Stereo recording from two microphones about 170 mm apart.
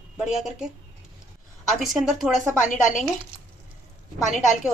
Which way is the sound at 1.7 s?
Centre (ahead or behind).